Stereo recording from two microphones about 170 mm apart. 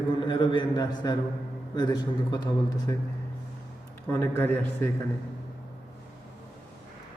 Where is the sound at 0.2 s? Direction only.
30° left (ahead or behind).